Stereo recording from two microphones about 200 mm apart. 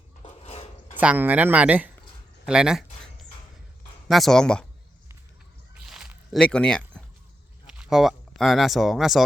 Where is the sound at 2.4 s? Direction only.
5° right (ahead or behind).